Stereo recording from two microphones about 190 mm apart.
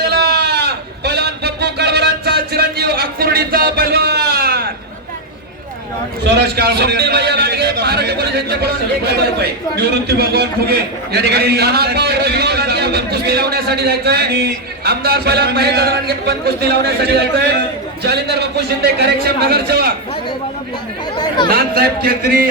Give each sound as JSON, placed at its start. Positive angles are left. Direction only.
{"t": 0.0, "sound": "a sound", "side_deg": -60}
{"t": 6.2, "sound": "a man's voice", "side_deg": -60}
{"t": 9.8, "sound": "a man's voice", "side_deg": -60}
{"t": 21.2, "sound": "speech", "side_deg": 25}
{"t": 21.5, "sound": "speech", "side_deg": -50}